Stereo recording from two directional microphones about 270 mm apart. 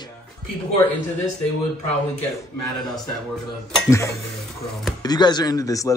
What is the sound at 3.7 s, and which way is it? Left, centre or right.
Speech, centre.